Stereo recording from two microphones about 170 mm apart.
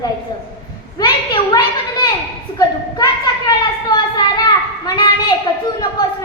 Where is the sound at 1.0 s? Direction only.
25° left (ahead or behind).